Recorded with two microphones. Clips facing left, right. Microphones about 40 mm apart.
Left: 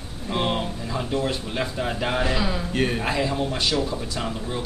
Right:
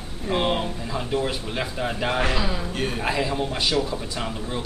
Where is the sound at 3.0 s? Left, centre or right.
Centre.